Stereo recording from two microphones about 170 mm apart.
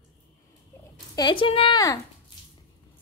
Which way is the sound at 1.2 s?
30° left (ahead or behind).